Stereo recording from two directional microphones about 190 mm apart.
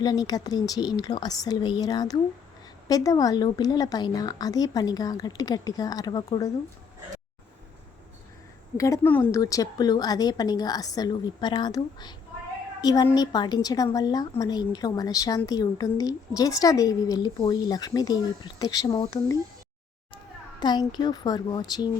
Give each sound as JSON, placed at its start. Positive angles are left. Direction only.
{"t": 0.0, "sound": "a woman's voice", "side_deg": 20}
{"t": 8.8, "sound": "a woman's voice", "side_deg": 15}
{"t": 20.6, "sound": "a woman's voice", "side_deg": 20}